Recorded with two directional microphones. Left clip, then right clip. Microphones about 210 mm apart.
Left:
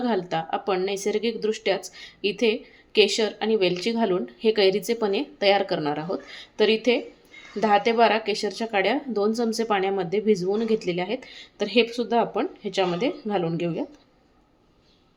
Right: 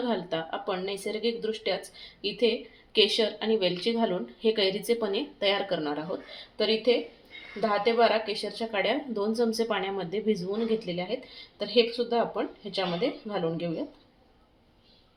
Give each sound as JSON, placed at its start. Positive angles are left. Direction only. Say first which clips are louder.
{"t": 0.1, "sound": "speech", "louder": "left 5 dB", "side_deg": 35}